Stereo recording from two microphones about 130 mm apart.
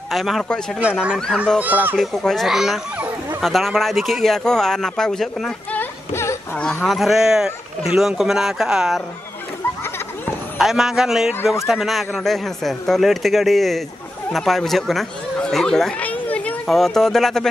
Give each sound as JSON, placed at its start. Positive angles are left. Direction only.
{"t": 0.1, "sound": "speech", "side_deg": 0}
{"t": 5.8, "sound": "a sound", "side_deg": 20}
{"t": 6.5, "sound": "speech", "side_deg": 10}
{"t": 6.9, "sound": "speech", "side_deg": 0}
{"t": 10.6, "sound": "speech", "side_deg": -5}